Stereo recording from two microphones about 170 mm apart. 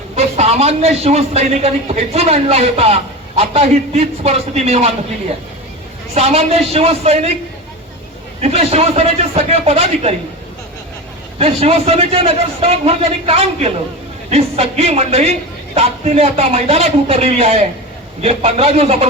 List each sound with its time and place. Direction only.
0.2 s a man's voice: 40° right (ahead or behind)
6.1 s a man's voice: 40° right (ahead or behind)
8.4 s a man's voice: 35° right (ahead or behind)
11.3 s a man's voice: 35° right (ahead or behind)